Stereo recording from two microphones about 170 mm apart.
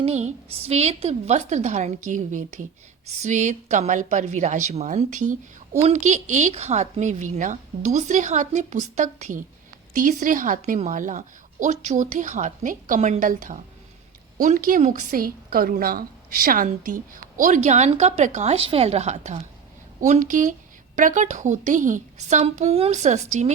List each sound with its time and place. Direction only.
0.0 s a woman's voice: 40° right (ahead or behind)